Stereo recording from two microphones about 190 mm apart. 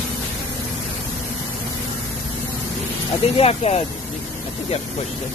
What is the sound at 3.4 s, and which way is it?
Speech, 30° left (ahead or behind).